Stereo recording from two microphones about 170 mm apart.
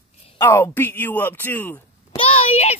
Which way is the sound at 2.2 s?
40° left (ahead or behind).